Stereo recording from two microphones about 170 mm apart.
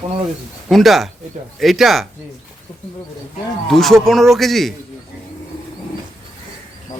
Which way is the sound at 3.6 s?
Centre (ahead or behind).